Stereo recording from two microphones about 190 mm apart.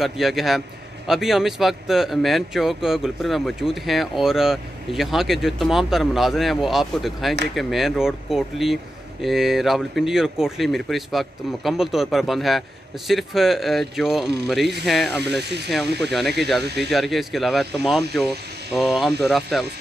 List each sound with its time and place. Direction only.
0.0 s speech: centre (ahead or behind)
15.2 s speech: 60° right (ahead or behind)
16.1 s speech: centre (ahead or behind)